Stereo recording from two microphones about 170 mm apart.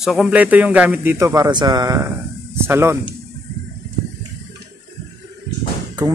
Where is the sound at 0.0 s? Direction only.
Centre (ahead or behind).